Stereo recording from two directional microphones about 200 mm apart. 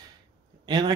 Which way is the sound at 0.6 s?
20° right (ahead or behind).